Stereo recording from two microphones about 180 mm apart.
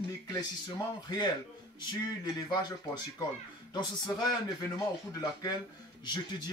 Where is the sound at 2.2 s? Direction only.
25° left (ahead or behind).